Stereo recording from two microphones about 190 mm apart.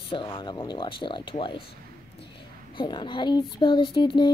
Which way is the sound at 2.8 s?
25° left (ahead or behind).